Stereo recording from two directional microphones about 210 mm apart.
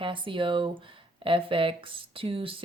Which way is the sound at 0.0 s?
25° right (ahead or behind).